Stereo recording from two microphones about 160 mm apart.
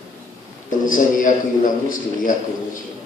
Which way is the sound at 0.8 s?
55° left (ahead or behind).